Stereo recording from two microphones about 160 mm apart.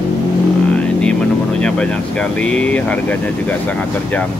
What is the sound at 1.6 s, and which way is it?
Speech, 5° left (ahead or behind).